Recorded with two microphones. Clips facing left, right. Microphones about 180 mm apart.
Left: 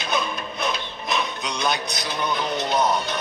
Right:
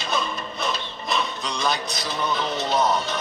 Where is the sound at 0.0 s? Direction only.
Centre (ahead or behind).